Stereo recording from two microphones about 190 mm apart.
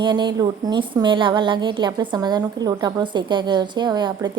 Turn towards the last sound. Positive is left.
turn(degrees=-20)  # may be behind; listen again after turning